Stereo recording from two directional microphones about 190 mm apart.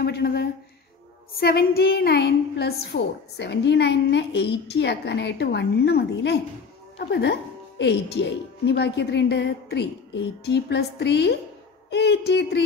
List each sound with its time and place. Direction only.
0.0 s a woman's voice: 60° left (ahead or behind)